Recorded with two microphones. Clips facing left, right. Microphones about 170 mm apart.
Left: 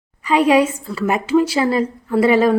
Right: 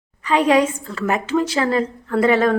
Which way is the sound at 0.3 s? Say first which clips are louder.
Left 2 dB; 10° left (ahead or behind).